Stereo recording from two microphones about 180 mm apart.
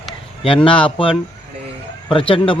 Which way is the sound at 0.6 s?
30° left (ahead or behind).